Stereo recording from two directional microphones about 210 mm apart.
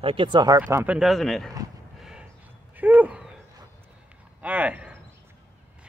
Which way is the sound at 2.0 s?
5° right (ahead or behind).